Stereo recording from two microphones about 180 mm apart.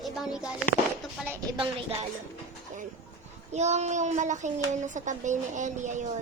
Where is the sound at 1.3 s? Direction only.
25° right (ahead or behind).